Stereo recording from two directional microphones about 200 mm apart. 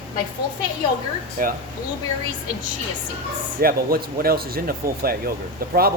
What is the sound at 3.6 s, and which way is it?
Speech, 50° right (ahead or behind).